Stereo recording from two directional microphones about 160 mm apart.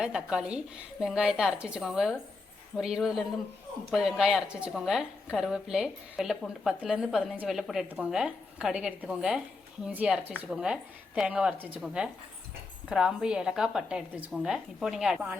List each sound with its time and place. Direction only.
0.0 s a woman's voice: 5° right (ahead or behind)